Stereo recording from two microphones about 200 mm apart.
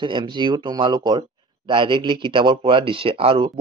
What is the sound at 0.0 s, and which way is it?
Speech, 25° right (ahead or behind).